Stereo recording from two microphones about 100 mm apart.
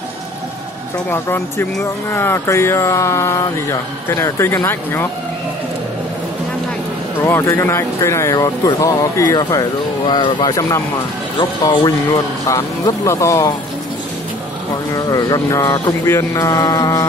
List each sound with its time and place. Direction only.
1.1 s speech: 25° left (ahead or behind)
7.2 s speech: 25° left (ahead or behind)
8.4 s speech: 40° left (ahead or behind)
12.1 s speech: 30° left (ahead or behind)
15.0 s speech: 40° left (ahead or behind)
16.1 s speech: 30° left (ahead or behind)